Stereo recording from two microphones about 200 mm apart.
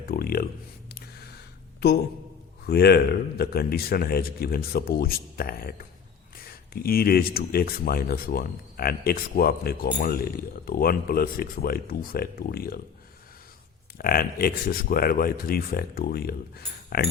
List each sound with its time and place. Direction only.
0.1 s speech: 50° left (ahead or behind)
2.6 s speech: 50° left (ahead or behind)
14.0 s speech: 45° left (ahead or behind)